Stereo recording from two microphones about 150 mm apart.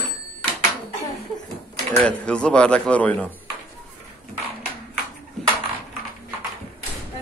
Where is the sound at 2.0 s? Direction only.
5° left (ahead or behind).